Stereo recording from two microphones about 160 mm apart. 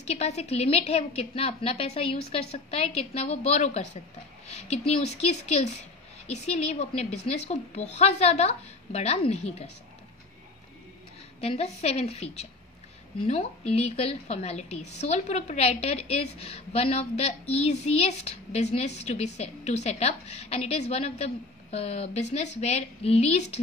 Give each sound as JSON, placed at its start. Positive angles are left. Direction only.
{"t": 0.0, "sound": "a woman's voice", "side_deg": 45}
{"t": 11.4, "sound": "a woman's voice", "side_deg": 40}